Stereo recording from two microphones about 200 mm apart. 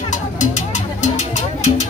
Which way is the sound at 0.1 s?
35° left (ahead or behind).